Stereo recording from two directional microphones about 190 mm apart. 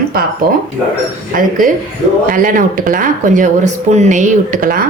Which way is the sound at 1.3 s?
45° right (ahead or behind).